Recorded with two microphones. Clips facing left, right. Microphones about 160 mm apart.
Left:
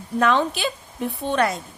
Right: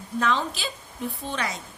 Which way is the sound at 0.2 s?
65° left (ahead or behind).